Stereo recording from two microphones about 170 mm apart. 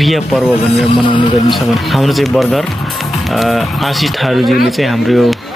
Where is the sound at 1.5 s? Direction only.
Centre (ahead or behind).